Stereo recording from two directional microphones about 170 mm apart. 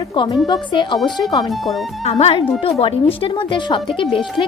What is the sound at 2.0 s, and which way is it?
A woman's voice, 35° left (ahead or behind).